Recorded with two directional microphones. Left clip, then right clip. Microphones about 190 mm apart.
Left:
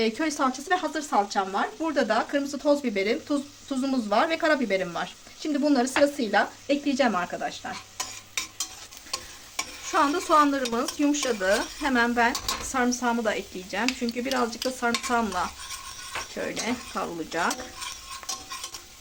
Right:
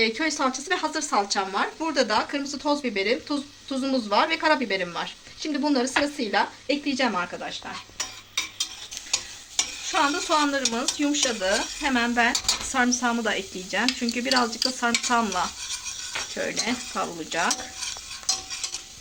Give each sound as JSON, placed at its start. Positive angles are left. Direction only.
{"t": 0.0, "sound": "a woman's voice", "side_deg": 25}
{"t": 9.9, "sound": "a woman's voice", "side_deg": 30}
{"t": 16.3, "sound": "stir", "side_deg": 5}